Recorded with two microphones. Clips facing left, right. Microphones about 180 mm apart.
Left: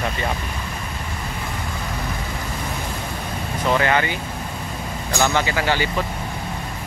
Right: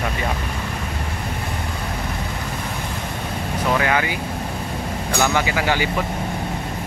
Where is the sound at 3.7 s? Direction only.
5° right (ahead or behind).